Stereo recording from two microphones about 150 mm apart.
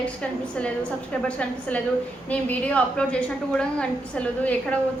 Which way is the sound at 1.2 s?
10° left (ahead or behind).